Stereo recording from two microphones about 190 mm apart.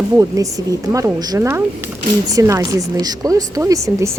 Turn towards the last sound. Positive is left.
turn(degrees=-15)  # may be behind; listen again after turning